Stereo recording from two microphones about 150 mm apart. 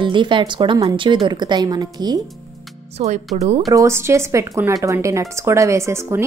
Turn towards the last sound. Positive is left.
turn(degrees=-20)  # may be behind; listen again after turning